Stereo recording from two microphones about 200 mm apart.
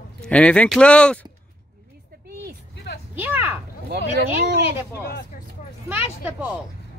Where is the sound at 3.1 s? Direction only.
10° right (ahead or behind).